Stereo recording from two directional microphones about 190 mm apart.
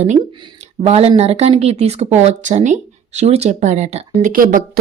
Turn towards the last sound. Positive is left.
turn(degrees=-50)  # may be behind; listen again after turning